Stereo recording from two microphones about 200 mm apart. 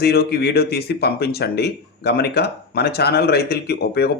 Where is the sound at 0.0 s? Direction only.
50° left (ahead or behind).